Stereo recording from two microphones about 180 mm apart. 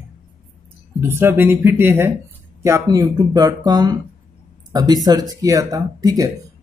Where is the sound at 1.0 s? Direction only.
10° right (ahead or behind).